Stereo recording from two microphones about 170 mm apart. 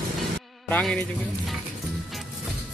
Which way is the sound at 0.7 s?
5° left (ahead or behind).